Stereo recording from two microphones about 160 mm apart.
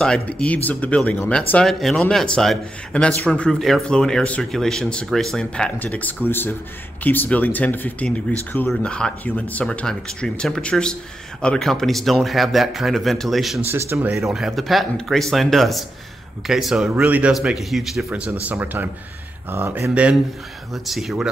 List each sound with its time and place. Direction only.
0.0 s speech: 5° left (ahead or behind)
13.6 s speech: 15° right (ahead or behind)
14.1 s speech: centre (ahead or behind)